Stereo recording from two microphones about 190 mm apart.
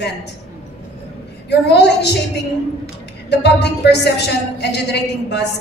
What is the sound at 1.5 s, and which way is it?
A woman's voice, 65° left (ahead or behind).